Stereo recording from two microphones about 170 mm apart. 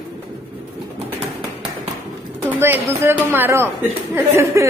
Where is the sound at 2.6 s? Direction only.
10° right (ahead or behind).